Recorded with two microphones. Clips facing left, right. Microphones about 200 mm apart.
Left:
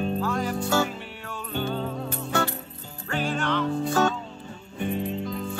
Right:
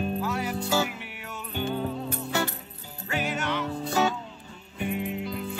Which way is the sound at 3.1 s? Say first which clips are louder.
Left 3 dB; 10° right (ahead or behind).